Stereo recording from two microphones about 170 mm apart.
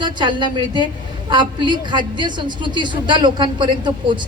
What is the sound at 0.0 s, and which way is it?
A woman's voice, 25° right (ahead or behind).